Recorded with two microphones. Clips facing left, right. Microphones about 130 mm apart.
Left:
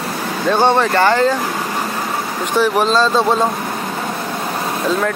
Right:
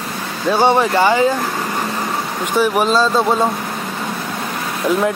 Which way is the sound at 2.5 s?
10° right (ahead or behind).